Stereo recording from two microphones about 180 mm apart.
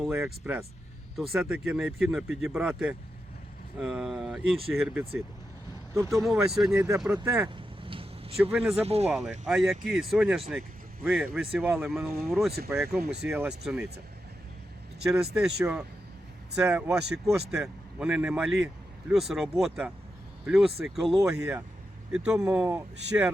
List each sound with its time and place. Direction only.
0.4 s speech: 10° right (ahead or behind)
5.9 s speech: 15° right (ahead or behind)
6.2 s speech: 5° right (ahead or behind)
6.7 s speech: 15° right (ahead or behind)
7.0 s speech: 5° right (ahead or behind)
7.5 s a sound: 30° right (ahead or behind)
8.7 s speech: 35° right (ahead or behind)
9.0 s speech: 5° right (ahead or behind)
12.9 s speech: 65° right (ahead or behind)
15.0 s speech: 5° right (ahead or behind)